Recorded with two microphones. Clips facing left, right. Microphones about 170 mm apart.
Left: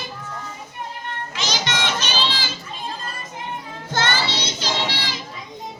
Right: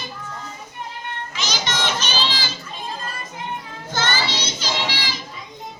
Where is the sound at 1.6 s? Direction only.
55° left (ahead or behind).